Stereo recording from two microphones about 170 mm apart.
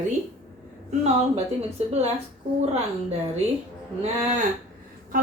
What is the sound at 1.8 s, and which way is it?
Speech, 40° right (ahead or behind).